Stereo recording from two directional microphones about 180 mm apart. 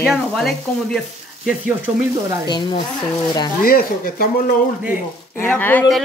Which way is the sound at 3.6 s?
55° left (ahead or behind).